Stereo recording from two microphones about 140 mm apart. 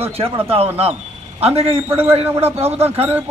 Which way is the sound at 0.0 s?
45° right (ahead or behind).